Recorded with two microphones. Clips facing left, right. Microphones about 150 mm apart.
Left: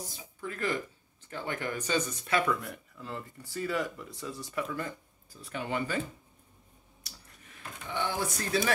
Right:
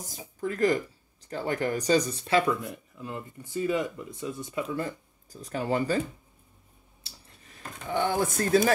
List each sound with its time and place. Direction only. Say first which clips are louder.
0.0 s speech: right 7 dB; 40° right (ahead or behind); by 4.6 s 20° right (ahead or behind)
4.7 s speech: right 5 dB; 35° right (ahead or behind)
7.0 s a sound: right 1 dB; 30° right (ahead or behind); by 8.7 s 45° right (ahead or behind)